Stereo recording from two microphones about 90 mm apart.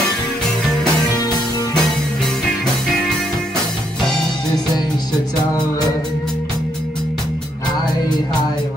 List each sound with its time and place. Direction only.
1.1 s music: 45° left (ahead or behind)